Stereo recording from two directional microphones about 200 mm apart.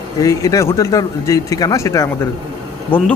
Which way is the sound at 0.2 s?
15° left (ahead or behind).